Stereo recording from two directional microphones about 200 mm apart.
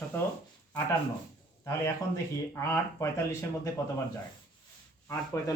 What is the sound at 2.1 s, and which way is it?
Speech, 15° left (ahead or behind).